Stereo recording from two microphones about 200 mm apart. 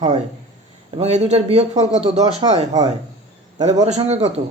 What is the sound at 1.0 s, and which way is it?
Speech, 30° right (ahead or behind).